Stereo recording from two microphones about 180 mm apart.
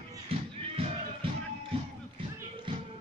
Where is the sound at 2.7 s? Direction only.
30° right (ahead or behind).